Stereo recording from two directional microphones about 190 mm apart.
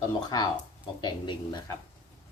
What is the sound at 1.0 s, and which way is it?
Speech, 25° left (ahead or behind).